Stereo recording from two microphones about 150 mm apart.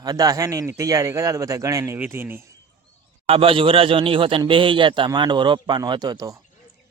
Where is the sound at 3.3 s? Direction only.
40° right (ahead or behind).